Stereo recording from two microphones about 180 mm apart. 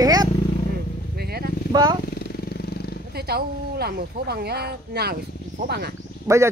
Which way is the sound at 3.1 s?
60° right (ahead or behind).